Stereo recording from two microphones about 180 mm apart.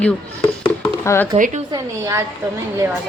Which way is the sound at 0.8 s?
15° left (ahead or behind).